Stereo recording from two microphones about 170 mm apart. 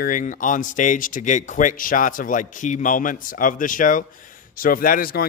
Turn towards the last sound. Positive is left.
turn(degrees=60)  # may be behind; listen again after turning